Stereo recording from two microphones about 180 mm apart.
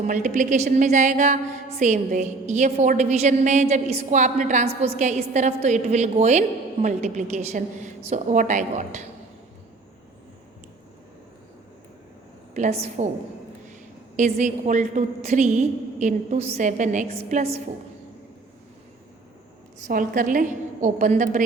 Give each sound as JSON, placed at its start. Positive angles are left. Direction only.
{"t": 0.0, "sound": "a woman's voice", "side_deg": -45}
{"t": 12.5, "sound": "a woman's voice", "side_deg": -40}
{"t": 14.3, "sound": "a woman's voice", "side_deg": -45}
{"t": 19.9, "sound": "a woman's voice", "side_deg": -50}